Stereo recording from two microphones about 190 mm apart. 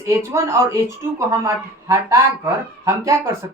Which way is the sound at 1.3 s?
15° right (ahead or behind).